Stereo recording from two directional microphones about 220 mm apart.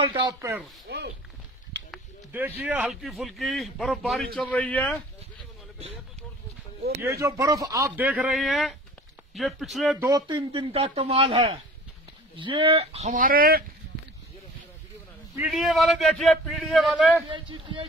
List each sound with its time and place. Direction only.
0.0 s speech: 20° right (ahead or behind)
0.8 s speech: 50° right (ahead or behind)
1.9 s a sound: 10° right (ahead or behind)
2.6 s a man's voice: 5° right (ahead or behind)
7.0 s a man's voice: 15° right (ahead or behind)
9.9 s speech: 15° right (ahead or behind); by 13.7 s 40° right (ahead or behind)
15.3 s a man's voice: 5° right (ahead or behind)
17.3 s speech: 20° right (ahead or behind)